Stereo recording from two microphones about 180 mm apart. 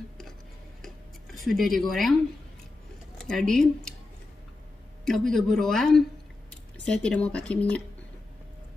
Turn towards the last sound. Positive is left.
turn(degrees=5)  # may be behind; listen again after turning